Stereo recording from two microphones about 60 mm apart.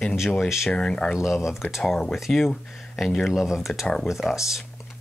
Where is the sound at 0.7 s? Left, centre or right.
Centre.